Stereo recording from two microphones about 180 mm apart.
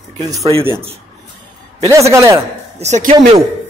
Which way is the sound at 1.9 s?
15° right (ahead or behind).